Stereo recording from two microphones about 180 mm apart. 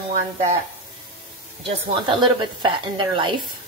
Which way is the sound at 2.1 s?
25° right (ahead or behind).